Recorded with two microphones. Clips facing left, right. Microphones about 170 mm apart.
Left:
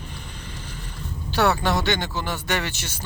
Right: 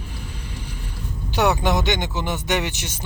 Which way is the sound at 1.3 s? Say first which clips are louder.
Right 1 dB; 20° right (ahead or behind).